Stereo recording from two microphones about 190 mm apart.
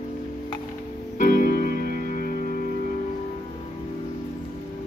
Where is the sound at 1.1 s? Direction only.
45° left (ahead or behind).